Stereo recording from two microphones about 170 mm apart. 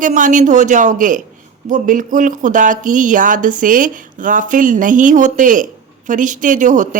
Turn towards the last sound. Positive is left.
turn(degrees=-50)  # may be behind; listen again after turning